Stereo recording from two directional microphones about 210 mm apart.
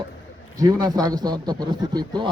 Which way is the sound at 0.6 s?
15° right (ahead or behind).